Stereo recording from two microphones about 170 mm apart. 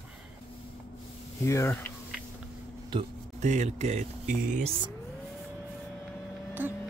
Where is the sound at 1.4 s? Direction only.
15° left (ahead or behind).